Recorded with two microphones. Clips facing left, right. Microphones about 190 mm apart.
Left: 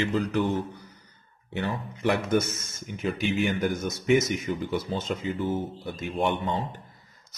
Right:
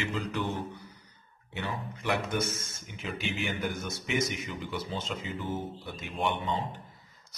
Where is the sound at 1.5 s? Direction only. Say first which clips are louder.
Left 5 dB; 50° left (ahead or behind).